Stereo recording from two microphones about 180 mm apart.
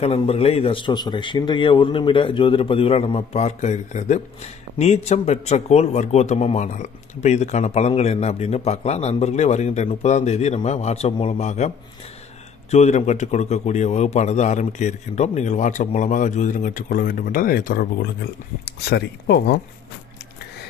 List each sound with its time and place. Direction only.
0.0 s a man's voice: 35° left (ahead or behind)
12.7 s a man's voice: 40° left (ahead or behind); by 17.8 s 55° left (ahead or behind)
18.7 s speech: 65° left (ahead or behind)